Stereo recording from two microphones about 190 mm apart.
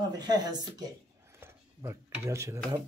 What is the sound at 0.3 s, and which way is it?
Speech, 20° right (ahead or behind).